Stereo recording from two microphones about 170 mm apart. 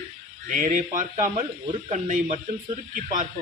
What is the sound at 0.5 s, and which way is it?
Speech, 45° right (ahead or behind).